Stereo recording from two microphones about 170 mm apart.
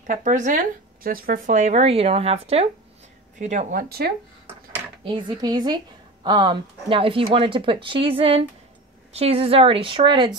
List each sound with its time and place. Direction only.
0.0 s speech: 50° right (ahead or behind)
3.3 s speech: 45° right (ahead or behind)
5.0 s speech: 30° right (ahead or behind)